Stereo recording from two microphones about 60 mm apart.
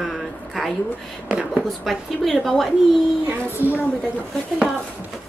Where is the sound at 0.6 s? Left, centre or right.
Centre.